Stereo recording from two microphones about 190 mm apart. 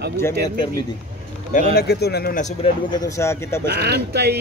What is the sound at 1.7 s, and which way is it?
Speech, 60° left (ahead or behind).